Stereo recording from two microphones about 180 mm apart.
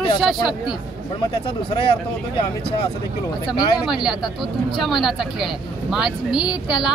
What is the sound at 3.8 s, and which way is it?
Speech, 5° right (ahead or behind).